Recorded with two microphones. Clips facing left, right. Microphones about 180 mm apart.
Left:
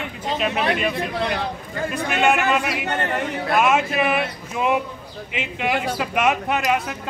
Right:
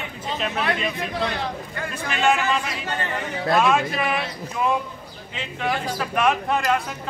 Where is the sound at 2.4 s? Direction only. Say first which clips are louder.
Left 4 dB; 65° left (ahead or behind).